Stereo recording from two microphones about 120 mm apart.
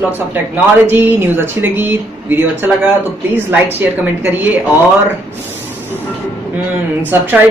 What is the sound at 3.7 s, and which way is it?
Speech, 15° right (ahead or behind).